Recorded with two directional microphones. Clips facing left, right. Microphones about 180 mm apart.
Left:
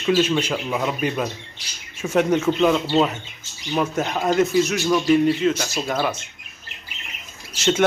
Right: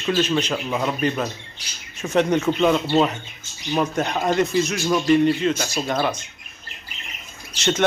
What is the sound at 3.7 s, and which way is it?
A man's voice, 5° left (ahead or behind).